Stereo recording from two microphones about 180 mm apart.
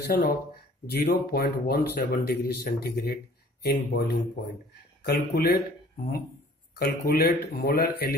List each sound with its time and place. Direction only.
0.0 s speech: 65° left (ahead or behind)
6.7 s speech: 60° left (ahead or behind)